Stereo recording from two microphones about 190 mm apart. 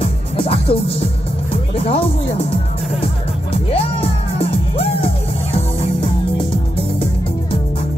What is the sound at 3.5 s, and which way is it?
Music, 30° left (ahead or behind).